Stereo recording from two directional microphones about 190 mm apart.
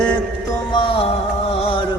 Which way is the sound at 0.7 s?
30° left (ahead or behind).